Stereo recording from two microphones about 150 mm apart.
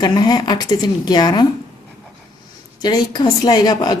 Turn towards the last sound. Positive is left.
turn(degrees=25)  # may be behind; listen again after turning